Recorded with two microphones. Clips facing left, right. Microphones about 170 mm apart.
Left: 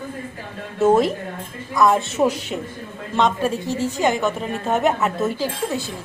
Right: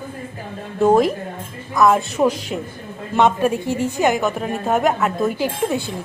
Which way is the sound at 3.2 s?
10° right (ahead or behind).